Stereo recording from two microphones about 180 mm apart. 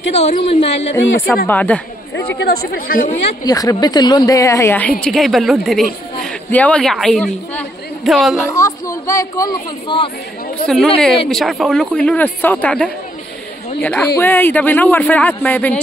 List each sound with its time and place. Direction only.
0.1 s a woman's voice: 35° left (ahead or behind)
0.9 s a man's voice: 15° left (ahead or behind)
2.1 s speech: 65° left (ahead or behind); by 3.2 s 50° left (ahead or behind)
3.4 s a woman's voice: 20° left (ahead or behind)
5.0 s a woman's voice: centre (ahead or behind)
8.5 s a man's voice: 20° left (ahead or behind)
11.2 s a woman's voice: centre (ahead or behind)